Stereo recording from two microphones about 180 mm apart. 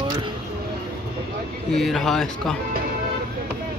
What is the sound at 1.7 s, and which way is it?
Speech, centre (ahead or behind).